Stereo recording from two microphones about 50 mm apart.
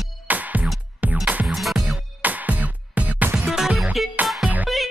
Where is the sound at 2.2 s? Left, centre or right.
Right.